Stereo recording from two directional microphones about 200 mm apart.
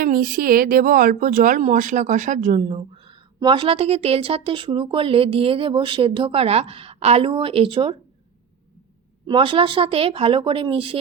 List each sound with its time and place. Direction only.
0.0 s speech: 45° right (ahead or behind); by 7.9 s 25° right (ahead or behind)
9.2 s speech: 25° right (ahead or behind)